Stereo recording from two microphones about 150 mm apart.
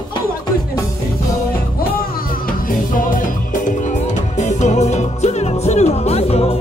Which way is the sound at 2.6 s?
65° left (ahead or behind).